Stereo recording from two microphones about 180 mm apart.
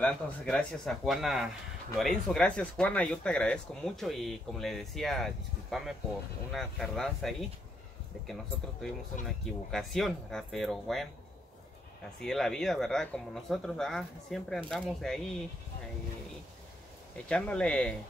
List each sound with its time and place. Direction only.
0.0 s speech: 5° left (ahead or behind)
9.2 s speech: centre (ahead or behind)
12.2 s speech: centre (ahead or behind)
17.3 s speech: 5° left (ahead or behind)